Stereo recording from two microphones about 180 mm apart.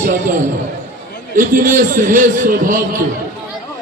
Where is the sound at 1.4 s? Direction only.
50° right (ahead or behind).